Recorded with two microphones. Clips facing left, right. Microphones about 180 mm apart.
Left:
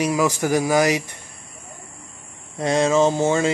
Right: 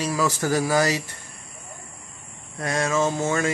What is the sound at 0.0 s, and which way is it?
Speech, 15° left (ahead or behind).